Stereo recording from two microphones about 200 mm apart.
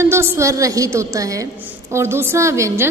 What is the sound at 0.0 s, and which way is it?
A woman's voice, 10° right (ahead or behind).